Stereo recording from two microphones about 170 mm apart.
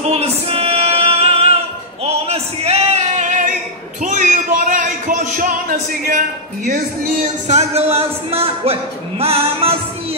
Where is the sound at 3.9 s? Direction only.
50° right (ahead or behind).